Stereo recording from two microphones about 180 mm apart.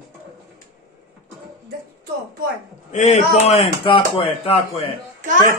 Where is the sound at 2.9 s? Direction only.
35° left (ahead or behind).